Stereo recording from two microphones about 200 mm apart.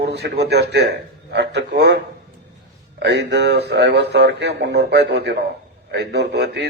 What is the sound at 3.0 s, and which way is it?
A man's voice, 60° right (ahead or behind).